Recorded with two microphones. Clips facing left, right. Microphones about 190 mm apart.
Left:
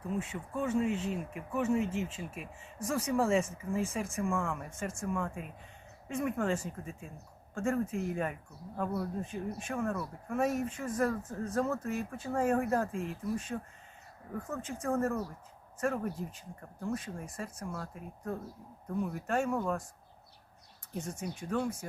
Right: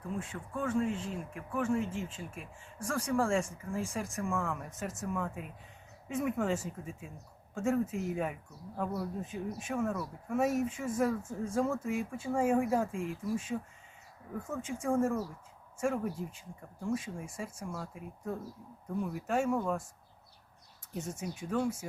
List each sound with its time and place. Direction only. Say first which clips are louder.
0.6 s speech: left 1 dB; 10° left (ahead or behind)
21.2 s speech: right 1 dB; 5° right (ahead or behind)